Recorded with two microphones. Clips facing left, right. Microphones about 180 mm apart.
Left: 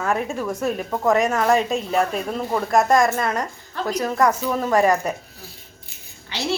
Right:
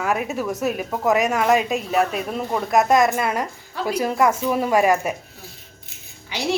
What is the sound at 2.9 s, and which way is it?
Speech, 20° right (ahead or behind).